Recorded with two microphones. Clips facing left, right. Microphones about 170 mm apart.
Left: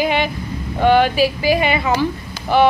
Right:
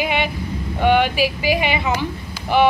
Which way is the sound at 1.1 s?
15° right (ahead or behind).